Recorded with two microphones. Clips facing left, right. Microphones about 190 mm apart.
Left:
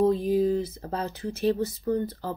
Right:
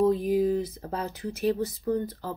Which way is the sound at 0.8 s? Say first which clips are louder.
Left 1 dB; 10° right (ahead or behind).